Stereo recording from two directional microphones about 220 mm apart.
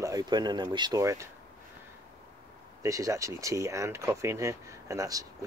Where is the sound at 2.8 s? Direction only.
15° right (ahead or behind).